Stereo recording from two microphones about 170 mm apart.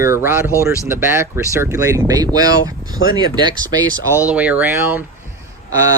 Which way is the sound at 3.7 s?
15° right (ahead or behind).